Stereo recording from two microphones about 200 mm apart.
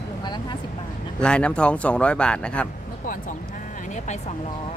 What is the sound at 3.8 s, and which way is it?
Speech, 35° left (ahead or behind).